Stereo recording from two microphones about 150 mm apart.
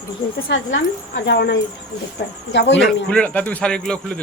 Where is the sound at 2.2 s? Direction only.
90° left.